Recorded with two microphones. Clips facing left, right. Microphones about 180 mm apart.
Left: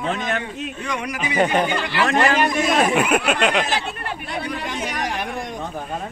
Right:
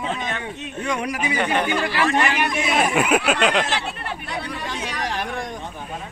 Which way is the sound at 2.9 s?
Centre (ahead or behind).